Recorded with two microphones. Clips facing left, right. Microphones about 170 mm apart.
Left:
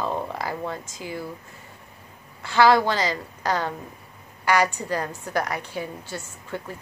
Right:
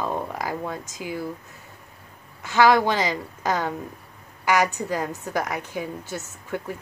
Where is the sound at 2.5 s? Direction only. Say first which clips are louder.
Even; 15° right (ahead or behind).